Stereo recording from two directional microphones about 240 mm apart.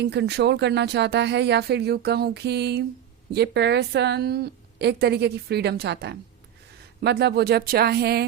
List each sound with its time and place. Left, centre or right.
0.0 s a woman's voice: right